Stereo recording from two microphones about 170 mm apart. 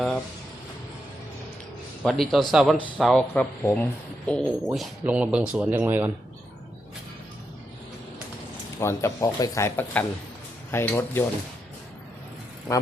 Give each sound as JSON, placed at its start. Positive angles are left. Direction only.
{"t": 2.0, "sound": "speech", "side_deg": 0}
{"t": 8.8, "sound": "speech", "side_deg": 15}